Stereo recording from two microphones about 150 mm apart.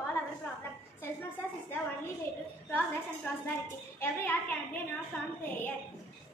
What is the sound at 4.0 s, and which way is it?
Speech, 10° left (ahead or behind).